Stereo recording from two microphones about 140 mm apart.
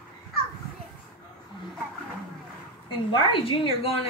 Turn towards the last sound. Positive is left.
turn(degrees=40)  # may be behind; listen again after turning